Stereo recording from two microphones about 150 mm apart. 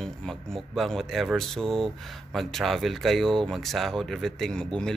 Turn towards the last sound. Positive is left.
turn(degrees=5)  # may be behind; listen again after turning